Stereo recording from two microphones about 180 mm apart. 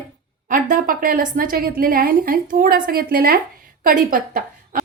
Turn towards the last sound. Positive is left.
turn(degrees=-50)  # may be behind; listen again after turning